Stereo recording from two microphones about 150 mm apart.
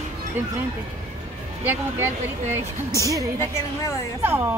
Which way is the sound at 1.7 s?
15° right (ahead or behind).